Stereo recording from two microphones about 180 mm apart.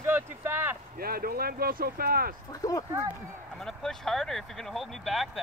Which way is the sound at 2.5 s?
20° left (ahead or behind).